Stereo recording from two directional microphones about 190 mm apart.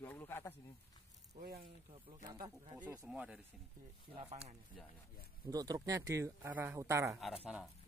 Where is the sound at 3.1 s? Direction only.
5° right (ahead or behind).